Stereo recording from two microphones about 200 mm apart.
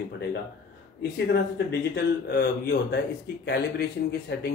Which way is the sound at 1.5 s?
55° left (ahead or behind).